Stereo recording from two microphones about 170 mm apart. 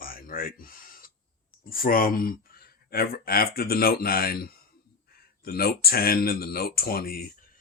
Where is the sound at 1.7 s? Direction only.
60° left (ahead or behind).